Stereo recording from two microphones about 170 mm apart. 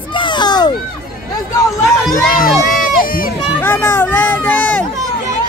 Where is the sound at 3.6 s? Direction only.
15° left (ahead or behind).